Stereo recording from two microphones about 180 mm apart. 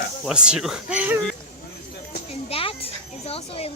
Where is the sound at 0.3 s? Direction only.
5° right (ahead or behind).